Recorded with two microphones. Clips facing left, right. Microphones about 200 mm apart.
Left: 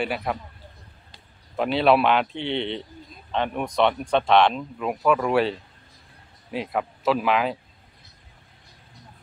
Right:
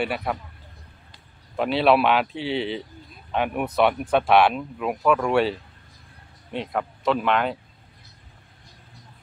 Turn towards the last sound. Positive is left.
turn(degrees=0)  # may be behind; listen again after turning